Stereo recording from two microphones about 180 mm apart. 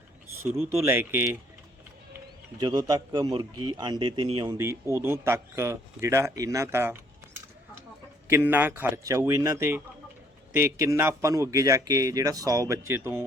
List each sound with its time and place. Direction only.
0.8 s a man's voice: 10° right (ahead or behind)
2.6 s a man's voice: 20° right (ahead or behind)
4.5 s a man's voice: 15° right (ahead or behind)
8.4 s a man's voice: 10° right (ahead or behind)